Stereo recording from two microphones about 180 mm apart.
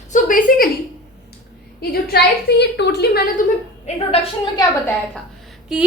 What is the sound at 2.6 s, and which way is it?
Speech, 70° left (ahead or behind).